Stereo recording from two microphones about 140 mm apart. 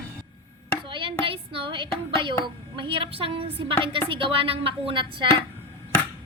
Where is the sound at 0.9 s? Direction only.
35° right (ahead or behind).